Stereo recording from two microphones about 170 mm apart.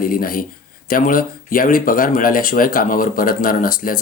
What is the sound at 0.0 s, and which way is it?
Speech, 55° left (ahead or behind).